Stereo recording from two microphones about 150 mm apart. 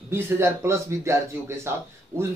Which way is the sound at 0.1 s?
20° right (ahead or behind).